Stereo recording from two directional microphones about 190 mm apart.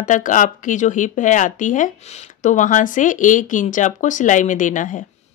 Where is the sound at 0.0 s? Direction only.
40° left (ahead or behind).